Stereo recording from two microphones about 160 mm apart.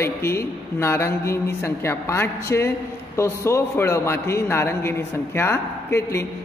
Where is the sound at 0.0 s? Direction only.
15° left (ahead or behind).